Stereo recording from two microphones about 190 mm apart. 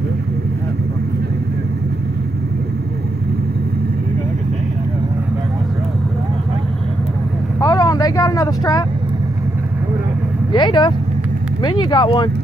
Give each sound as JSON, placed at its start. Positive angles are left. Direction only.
{"t": 7.6, "sound": "vehicle", "side_deg": 20}
{"t": 10.5, "sound": "speech", "side_deg": 25}